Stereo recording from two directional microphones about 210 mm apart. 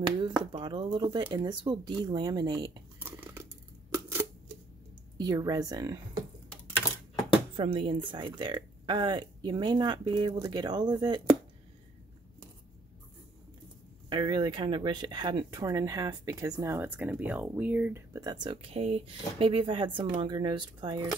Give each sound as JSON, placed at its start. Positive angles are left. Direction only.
{"t": 0.0, "sound": "speech", "side_deg": -20}
{"t": 3.9, "sound": "a sound", "side_deg": -10}
{"t": 5.1, "sound": "speech", "side_deg": -20}
{"t": 7.5, "sound": "speech", "side_deg": -25}
{"t": 14.0, "sound": "speech", "side_deg": -20}